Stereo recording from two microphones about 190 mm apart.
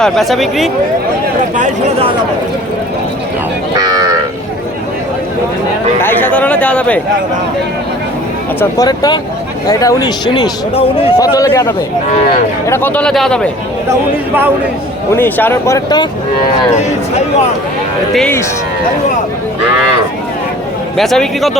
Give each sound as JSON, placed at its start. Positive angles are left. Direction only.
{"t": 0.0, "sound": "a man's voice", "side_deg": 0}
{"t": 1.5, "sound": "speech", "side_deg": -40}
{"t": 3.8, "sound": "livestock", "side_deg": -20}
{"t": 6.0, "sound": "speech", "side_deg": 10}
{"t": 8.8, "sound": "speech", "side_deg": 20}
{"t": 11.2, "sound": "a man's voice", "side_deg": 15}
{"t": 15.1, "sound": "speech", "side_deg": 10}
{"t": 16.7, "sound": "speech", "side_deg": 35}
{"t": 18.1, "sound": "a man's voice", "side_deg": 5}
{"t": 20.9, "sound": "a man's voice", "side_deg": 0}